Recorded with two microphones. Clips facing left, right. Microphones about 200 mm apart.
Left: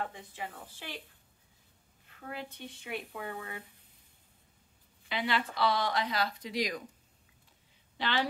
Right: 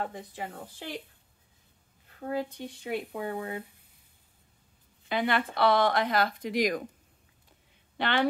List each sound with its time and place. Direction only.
0.0 s speech: 40° right (ahead or behind)
2.1 s speech: 35° right (ahead or behind)
5.0 s speech: 50° right (ahead or behind)
8.0 s a woman's voice: 55° right (ahead or behind)